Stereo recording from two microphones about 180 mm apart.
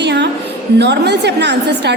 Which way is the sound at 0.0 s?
70° right (ahead or behind).